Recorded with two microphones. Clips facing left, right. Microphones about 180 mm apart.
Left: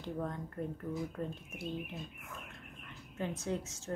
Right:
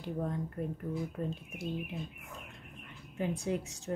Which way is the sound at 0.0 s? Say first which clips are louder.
Right 3 dB; 15° right (ahead or behind).